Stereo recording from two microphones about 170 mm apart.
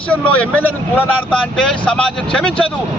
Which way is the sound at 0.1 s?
10° left (ahead or behind).